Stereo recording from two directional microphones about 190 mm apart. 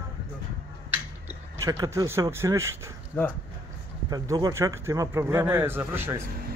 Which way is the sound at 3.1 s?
10° left (ahead or behind).